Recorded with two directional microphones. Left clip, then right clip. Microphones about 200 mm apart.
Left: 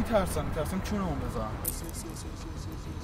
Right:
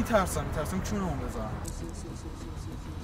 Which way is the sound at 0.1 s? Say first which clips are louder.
Right 1 dB; centre (ahead or behind).